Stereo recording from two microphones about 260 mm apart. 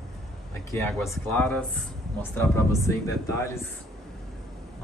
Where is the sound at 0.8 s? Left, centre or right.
Centre.